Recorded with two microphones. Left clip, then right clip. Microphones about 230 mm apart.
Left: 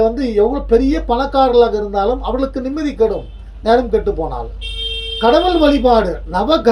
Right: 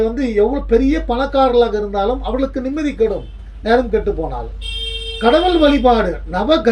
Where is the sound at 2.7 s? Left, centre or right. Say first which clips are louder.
Left 2 dB; centre.